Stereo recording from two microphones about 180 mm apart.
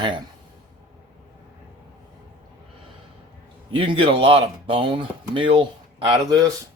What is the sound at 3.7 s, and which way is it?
Speech, 30° right (ahead or behind).